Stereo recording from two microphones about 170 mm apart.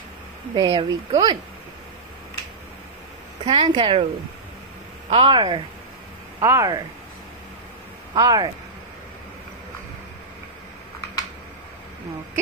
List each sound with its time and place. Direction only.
0.6 s speech: 25° right (ahead or behind)
3.4 s speech: 30° right (ahead or behind)
5.1 s speech: 30° right (ahead or behind)
6.4 s speech: 20° right (ahead or behind)
8.1 s speech: 25° right (ahead or behind)